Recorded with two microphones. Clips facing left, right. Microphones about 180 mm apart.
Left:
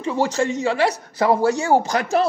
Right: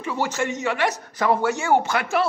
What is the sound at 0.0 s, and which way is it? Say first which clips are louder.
Speech: left 4 dB; 30° left (ahead or behind).